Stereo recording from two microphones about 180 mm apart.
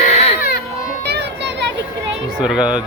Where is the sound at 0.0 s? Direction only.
40° left (ahead or behind).